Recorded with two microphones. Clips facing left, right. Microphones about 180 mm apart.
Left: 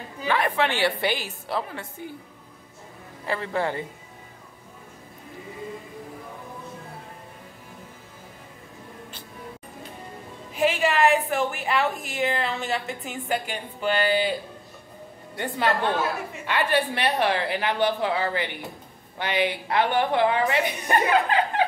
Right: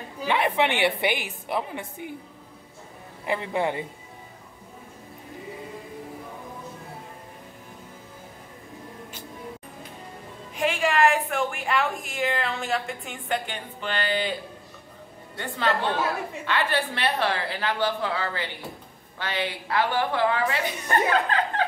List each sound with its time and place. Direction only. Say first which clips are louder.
0.3 s a woman's voice: even; 20° right (ahead or behind)
3.3 s a man's voice: right 1 dB; 20° right (ahead or behind)
10.5 s a woman's voice: left 2 dB; 5° left (ahead or behind)
15.3 s a woman's voice: left 2 dB; 15° left (ahead or behind)